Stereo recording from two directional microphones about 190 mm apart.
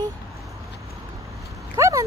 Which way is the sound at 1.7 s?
15° right (ahead or behind).